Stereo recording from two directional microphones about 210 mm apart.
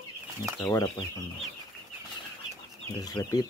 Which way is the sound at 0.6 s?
10° left (ahead or behind).